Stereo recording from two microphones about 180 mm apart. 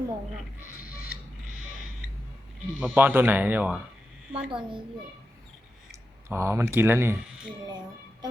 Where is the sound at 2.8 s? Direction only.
10° right (ahead or behind).